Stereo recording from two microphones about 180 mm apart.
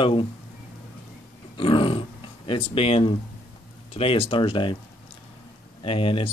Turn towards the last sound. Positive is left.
turn(degrees=30)  # may be behind; listen again after turning